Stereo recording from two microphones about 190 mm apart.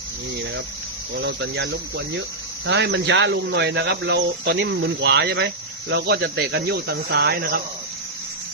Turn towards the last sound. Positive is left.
turn(degrees=-55)  # may be behind; listen again after turning